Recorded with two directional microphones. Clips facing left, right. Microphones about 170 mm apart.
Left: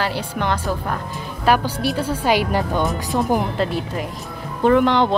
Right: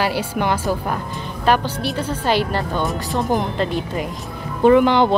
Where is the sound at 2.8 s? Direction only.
Centre (ahead or behind).